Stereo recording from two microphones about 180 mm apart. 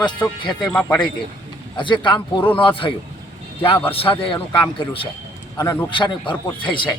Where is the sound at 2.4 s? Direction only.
10° left (ahead or behind).